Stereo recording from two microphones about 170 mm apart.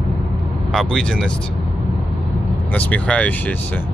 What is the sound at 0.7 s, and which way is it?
Speech, 5° left (ahead or behind).